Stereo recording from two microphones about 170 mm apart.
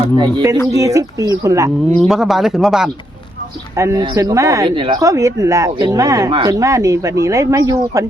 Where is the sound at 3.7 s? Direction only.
20° right (ahead or behind).